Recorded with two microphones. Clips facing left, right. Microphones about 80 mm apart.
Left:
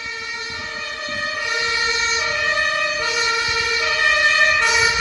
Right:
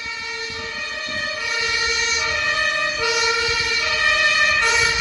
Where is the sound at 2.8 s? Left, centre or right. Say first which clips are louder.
Even; centre.